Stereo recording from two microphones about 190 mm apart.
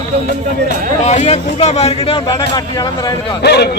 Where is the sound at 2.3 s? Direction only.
20° left (ahead or behind).